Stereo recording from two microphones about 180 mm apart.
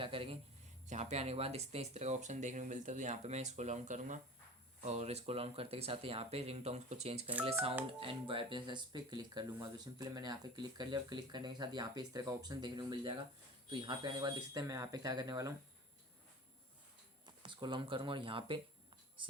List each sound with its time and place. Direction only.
0.0 s speech: 30° right (ahead or behind)
17.2 s speech: 25° right (ahead or behind)